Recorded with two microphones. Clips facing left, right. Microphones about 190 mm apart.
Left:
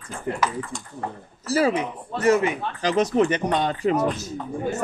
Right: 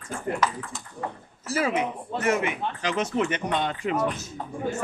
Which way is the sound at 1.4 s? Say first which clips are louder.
Left 4 dB; 35° left (ahead or behind).